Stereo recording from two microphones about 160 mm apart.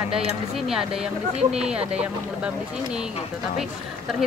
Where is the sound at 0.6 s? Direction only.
5° right (ahead or behind).